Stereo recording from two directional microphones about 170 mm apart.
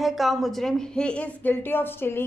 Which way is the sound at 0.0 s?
Centre (ahead or behind).